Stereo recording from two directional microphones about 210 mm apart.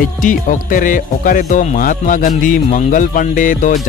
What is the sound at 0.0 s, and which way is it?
Speech, 40° left (ahead or behind).